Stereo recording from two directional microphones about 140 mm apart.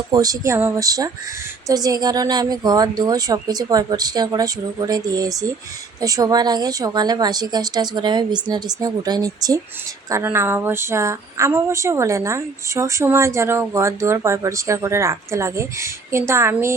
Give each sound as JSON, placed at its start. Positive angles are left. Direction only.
{"t": 0.1, "sound": "a woman's voice", "side_deg": -25}